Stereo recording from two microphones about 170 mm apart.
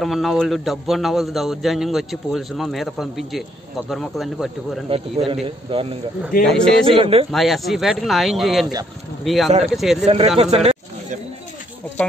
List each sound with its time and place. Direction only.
0.0 s a man's voice: centre (ahead or behind)
4.8 s a man's voice: 35° right (ahead or behind)
6.4 s a man's voice: 5° left (ahead or behind)
7.0 s a man's voice: 35° right (ahead or behind)
7.2 s a man's voice: centre (ahead or behind)
10.0 s speech: 35° right (ahead or behind)